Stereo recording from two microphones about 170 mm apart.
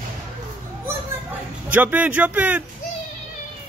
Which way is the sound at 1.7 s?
10° right (ahead or behind).